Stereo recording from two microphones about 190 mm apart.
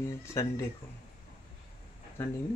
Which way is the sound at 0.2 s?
15° left (ahead or behind).